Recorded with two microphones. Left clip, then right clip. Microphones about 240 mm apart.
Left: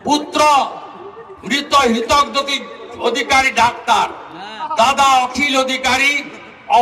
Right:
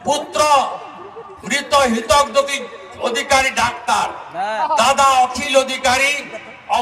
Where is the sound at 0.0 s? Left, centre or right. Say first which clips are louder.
Left 3 dB; left.